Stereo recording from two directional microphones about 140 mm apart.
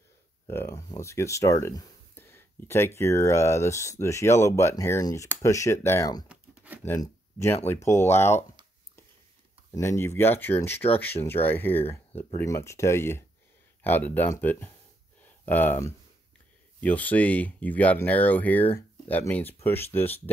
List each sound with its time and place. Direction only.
0.5 s speech: 20° left (ahead or behind)
6.2 s a sound: 10° right (ahead or behind)
7.0 s speech: 20° left (ahead or behind)
9.7 s speech: 20° left (ahead or behind)